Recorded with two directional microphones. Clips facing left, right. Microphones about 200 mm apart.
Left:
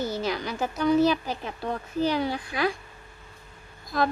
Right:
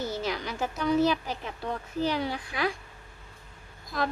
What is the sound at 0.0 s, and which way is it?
A woman's voice, 40° left (ahead or behind).